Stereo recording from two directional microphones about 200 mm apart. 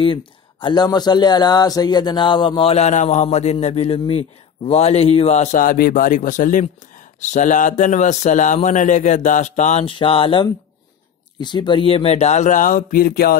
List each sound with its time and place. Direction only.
0.0 s speech: 25° left (ahead or behind); by 13.4 s 50° left (ahead or behind)